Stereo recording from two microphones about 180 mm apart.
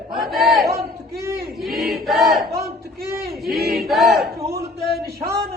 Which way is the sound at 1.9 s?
Centre (ahead or behind).